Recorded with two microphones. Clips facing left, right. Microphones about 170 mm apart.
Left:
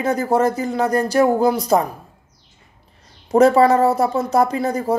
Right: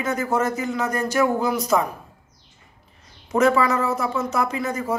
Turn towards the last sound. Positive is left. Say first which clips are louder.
# left 5 dB
turn(degrees=35)  # may be behind; listen again after turning